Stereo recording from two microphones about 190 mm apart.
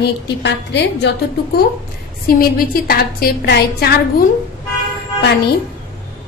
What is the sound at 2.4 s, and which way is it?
A woman's voice, 50° left (ahead or behind).